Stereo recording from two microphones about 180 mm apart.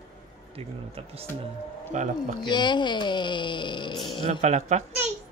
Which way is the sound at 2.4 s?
25° left (ahead or behind).